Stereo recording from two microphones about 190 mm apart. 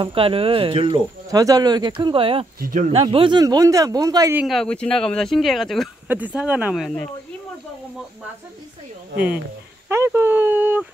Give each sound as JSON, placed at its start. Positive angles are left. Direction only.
{"t": 0.0, "sound": "speech", "side_deg": -30}
{"t": 4.4, "sound": "speech", "side_deg": 0}
{"t": 9.8, "sound": "speech", "side_deg": -15}